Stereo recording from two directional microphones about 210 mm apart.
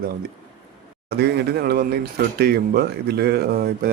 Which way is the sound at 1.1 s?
50° right (ahead or behind).